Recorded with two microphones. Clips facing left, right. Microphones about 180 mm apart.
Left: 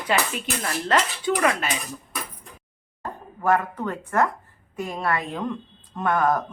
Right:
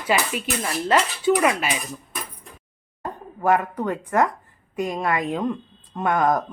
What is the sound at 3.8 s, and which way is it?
Speech, 15° right (ahead or behind).